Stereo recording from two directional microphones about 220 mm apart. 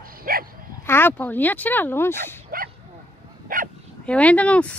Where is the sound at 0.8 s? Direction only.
10° left (ahead or behind).